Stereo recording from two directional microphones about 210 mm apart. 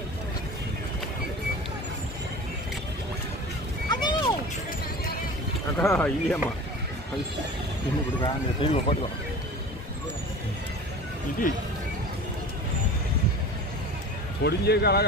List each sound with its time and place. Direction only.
3.9 s a sound: 20° left (ahead or behind)
5.8 s speech: 5° left (ahead or behind)
8.2 s speech: 25° left (ahead or behind)
14.4 s speech: 50° left (ahead or behind)